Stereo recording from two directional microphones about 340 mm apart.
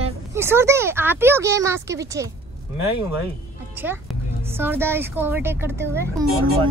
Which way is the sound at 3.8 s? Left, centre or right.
Centre.